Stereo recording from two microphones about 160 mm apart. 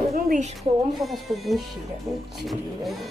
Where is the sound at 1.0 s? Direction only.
Centre (ahead or behind).